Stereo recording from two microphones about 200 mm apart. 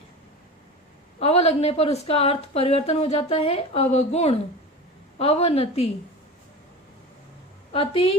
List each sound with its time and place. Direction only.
1.2 s a woman's voice: 30° left (ahead or behind)
7.7 s a woman's voice: 25° left (ahead or behind)